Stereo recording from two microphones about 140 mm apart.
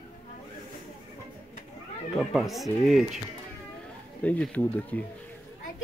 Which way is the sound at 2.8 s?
Centre (ahead or behind).